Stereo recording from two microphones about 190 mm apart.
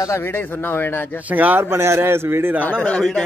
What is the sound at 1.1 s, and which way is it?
A man's voice, 10° right (ahead or behind).